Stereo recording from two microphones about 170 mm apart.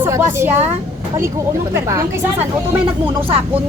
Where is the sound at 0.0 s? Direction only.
15° right (ahead or behind).